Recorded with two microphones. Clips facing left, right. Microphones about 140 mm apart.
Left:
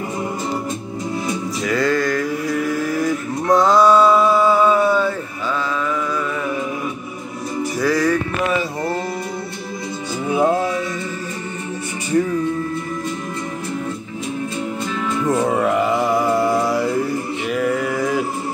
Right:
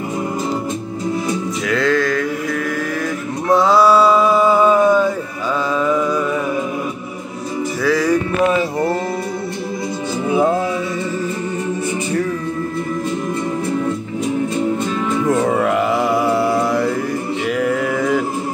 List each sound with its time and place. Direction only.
1.7 s mantra: centre (ahead or behind)
3.4 s a sound: 5° right (ahead or behind)
7.8 s music: centre (ahead or behind)
15.2 s music: 5° left (ahead or behind)
16.0 s mantra: 5° right (ahead or behind)
17.5 s a sound: centre (ahead or behind)